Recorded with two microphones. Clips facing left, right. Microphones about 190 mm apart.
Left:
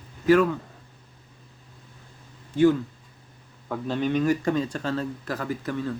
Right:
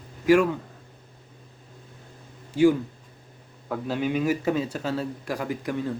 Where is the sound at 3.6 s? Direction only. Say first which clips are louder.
Left 1 dB; 5° right (ahead or behind).